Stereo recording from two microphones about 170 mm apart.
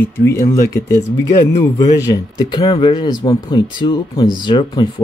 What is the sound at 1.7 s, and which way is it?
Speech, 20° left (ahead or behind).